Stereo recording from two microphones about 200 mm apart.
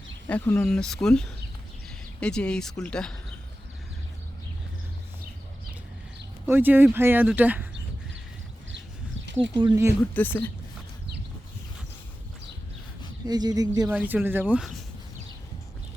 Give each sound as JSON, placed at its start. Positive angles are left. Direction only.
{"t": 0.3, "sound": "speech", "side_deg": 5}
{"t": 6.4, "sound": "speech", "side_deg": -10}
{"t": 9.6, "sound": "speech", "side_deg": -20}
{"t": 10.2, "sound": "speech", "side_deg": 10}
{"t": 13.2, "sound": "speech", "side_deg": -20}